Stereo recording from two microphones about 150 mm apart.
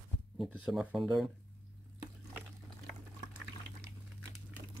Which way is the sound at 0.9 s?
5° right (ahead or behind).